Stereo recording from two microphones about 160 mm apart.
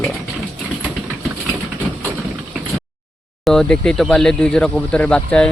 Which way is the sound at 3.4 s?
5° left (ahead or behind).